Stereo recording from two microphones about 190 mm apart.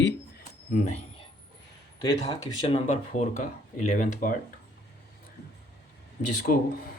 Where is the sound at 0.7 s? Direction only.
40° left (ahead or behind).